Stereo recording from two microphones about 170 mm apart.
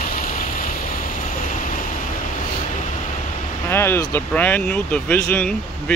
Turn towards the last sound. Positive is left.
turn(degrees=10)  # may be behind; listen again after turning